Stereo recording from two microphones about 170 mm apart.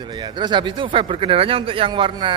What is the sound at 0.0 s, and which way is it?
A man's voice, 25° right (ahead or behind).